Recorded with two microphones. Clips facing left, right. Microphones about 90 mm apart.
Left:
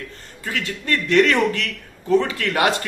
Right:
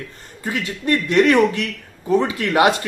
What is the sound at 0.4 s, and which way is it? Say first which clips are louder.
Speech: right 2 dB; 20° right (ahead or behind).